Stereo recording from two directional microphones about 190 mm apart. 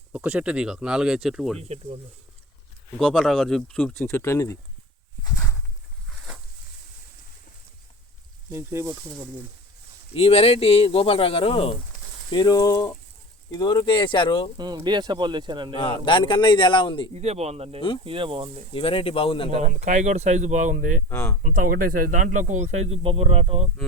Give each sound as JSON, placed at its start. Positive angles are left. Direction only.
{"t": 0.1, "sound": "speech", "side_deg": -5}
{"t": 3.0, "sound": "speech", "side_deg": 0}
{"t": 5.2, "sound": "a sound", "side_deg": 15}
{"t": 8.4, "sound": "speech", "side_deg": -15}
{"t": 10.2, "sound": "a man's voice", "side_deg": 30}
{"t": 14.6, "sound": "speech", "side_deg": -20}
{"t": 15.8, "sound": "a man's voice", "side_deg": 25}
{"t": 17.2, "sound": "speech", "side_deg": -35}
{"t": 18.7, "sound": "a man's voice", "side_deg": 30}
{"t": 19.5, "sound": "speech", "side_deg": -40}
{"t": 21.1, "sound": "speech", "side_deg": 15}
{"t": 21.4, "sound": "speech", "side_deg": -45}